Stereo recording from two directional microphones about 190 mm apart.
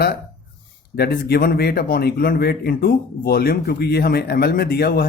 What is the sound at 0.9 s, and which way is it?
A man's voice, 55° left (ahead or behind).